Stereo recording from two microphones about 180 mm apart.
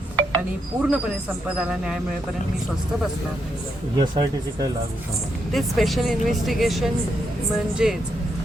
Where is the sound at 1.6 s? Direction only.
5° right (ahead or behind).